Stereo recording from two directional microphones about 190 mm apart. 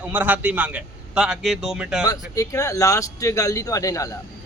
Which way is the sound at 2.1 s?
20° left (ahead or behind).